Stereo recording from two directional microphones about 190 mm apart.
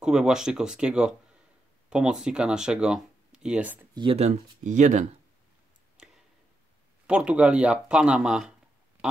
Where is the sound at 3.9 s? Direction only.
30° right (ahead or behind).